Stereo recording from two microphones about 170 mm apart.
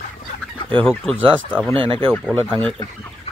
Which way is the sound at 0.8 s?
5° left (ahead or behind).